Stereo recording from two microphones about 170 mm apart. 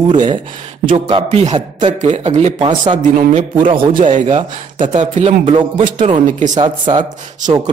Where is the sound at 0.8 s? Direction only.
40° right (ahead or behind).